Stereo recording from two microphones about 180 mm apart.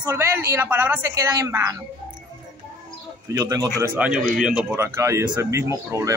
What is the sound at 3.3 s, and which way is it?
Speech, 20° right (ahead or behind).